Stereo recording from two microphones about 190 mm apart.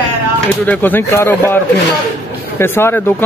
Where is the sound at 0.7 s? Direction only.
10° left (ahead or behind).